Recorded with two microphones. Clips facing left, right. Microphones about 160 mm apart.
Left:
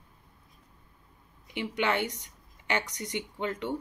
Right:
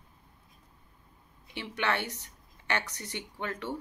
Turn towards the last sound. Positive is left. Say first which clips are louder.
# left 3 dB
turn(degrees=15)  # may be behind; listen again after turning